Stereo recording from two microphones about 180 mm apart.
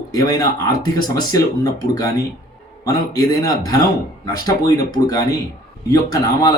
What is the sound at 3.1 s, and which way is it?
Speech, 20° left (ahead or behind).